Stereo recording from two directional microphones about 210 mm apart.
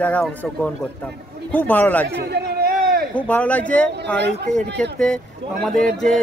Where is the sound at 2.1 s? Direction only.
50° right (ahead or behind).